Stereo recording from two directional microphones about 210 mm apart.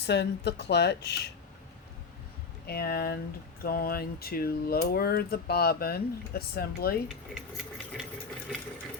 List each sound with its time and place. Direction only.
0.0 s speech: 55° left (ahead or behind)
2.6 s speech: 45° left (ahead or behind)
7.3 s engine: centre (ahead or behind)